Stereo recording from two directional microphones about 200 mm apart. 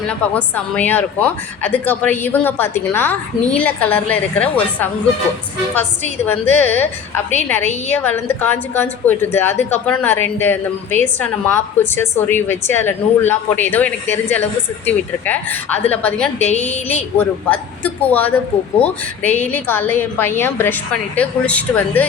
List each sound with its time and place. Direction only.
0.1 s a woman's voice: 5° left (ahead or behind)
6.5 s a woman's voice: 10° left (ahead or behind)
7.9 s a woman's voice: 10° left (ahead or behind)
16.4 s a woman's voice: 35° left (ahead or behind)
16.9 s a woman's voice: 5° left (ahead or behind)